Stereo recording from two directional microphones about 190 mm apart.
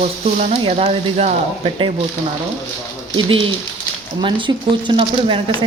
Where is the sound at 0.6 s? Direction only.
35° right (ahead or behind).